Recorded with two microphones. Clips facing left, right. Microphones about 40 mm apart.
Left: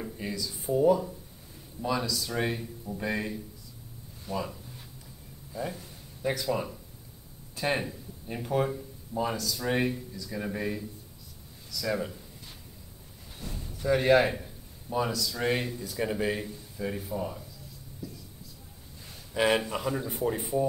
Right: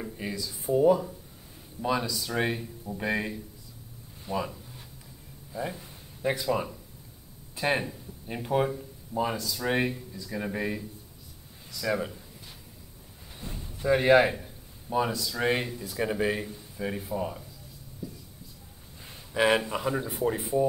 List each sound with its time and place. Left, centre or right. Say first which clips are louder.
0.0 s speech: even; centre
5.5 s speech: right 1 dB; centre
13.4 s a sound: even; right
13.7 s speech: right 2 dB; centre
19.3 s speech: right 2 dB; centre